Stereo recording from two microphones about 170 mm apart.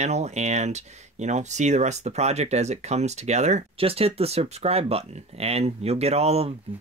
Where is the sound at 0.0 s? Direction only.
40° right (ahead or behind).